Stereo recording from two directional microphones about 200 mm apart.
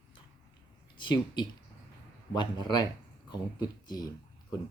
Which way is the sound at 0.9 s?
25° left (ahead or behind).